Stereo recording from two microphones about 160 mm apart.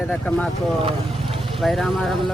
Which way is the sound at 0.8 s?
35° right (ahead or behind).